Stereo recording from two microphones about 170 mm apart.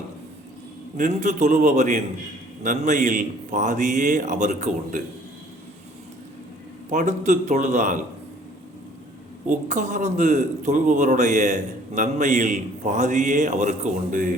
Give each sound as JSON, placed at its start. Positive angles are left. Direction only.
{"t": 0.9, "sound": "a man's voice", "side_deg": -45}
{"t": 6.9, "sound": "a man's voice", "side_deg": -45}
{"t": 9.5, "sound": "a man's voice", "side_deg": -45}